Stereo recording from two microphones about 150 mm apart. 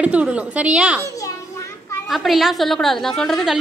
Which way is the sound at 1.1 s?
20° left (ahead or behind).